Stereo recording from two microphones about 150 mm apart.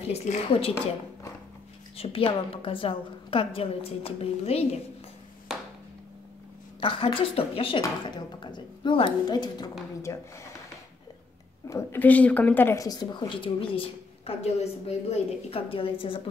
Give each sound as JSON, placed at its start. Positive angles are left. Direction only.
{"t": 0.1, "sound": "a woman's voice", "side_deg": 40}
{"t": 2.0, "sound": "a woman's voice", "side_deg": 40}
{"t": 6.8, "sound": "a woman's voice", "side_deg": 35}
{"t": 11.6, "sound": "a woman's voice", "side_deg": 15}